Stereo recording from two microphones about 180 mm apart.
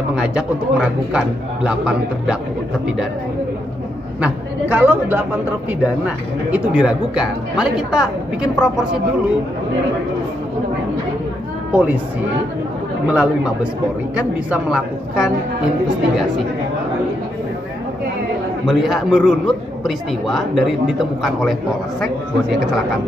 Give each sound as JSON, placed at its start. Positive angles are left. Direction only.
{"t": 0.1, "sound": "a man's voice", "side_deg": -5}
{"t": 4.2, "sound": "a man's voice", "side_deg": -10}
{"t": 11.7, "sound": "speech", "side_deg": -10}
{"t": 13.1, "sound": "a man's voice", "side_deg": -5}
{"t": 18.7, "sound": "a man's voice", "side_deg": 0}